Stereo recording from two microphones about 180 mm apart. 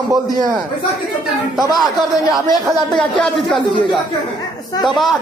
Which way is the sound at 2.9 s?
5° left (ahead or behind).